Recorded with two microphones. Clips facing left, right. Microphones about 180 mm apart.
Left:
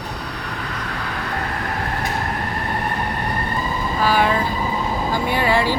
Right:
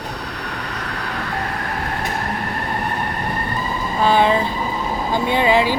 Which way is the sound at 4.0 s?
25° right (ahead or behind).